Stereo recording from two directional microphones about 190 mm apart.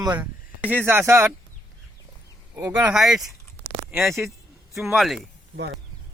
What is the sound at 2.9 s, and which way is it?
Speech, centre (ahead or behind).